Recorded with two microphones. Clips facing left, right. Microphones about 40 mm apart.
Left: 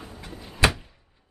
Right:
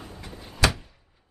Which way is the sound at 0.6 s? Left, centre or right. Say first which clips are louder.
Left 2 dB; left.